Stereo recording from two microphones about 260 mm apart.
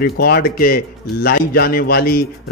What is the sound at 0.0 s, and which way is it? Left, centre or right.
A man's voice, left.